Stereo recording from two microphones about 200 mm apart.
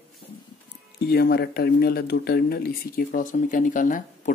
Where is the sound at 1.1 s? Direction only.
50° left (ahead or behind).